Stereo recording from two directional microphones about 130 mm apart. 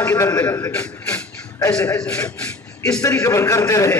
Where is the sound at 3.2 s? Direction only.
25° left (ahead or behind).